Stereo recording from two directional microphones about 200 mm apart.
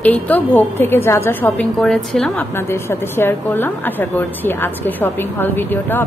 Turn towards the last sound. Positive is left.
turn(degrees=10)  # may be behind; listen again after turning